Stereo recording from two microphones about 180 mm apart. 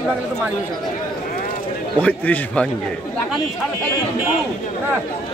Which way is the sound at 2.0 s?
5° left (ahead or behind).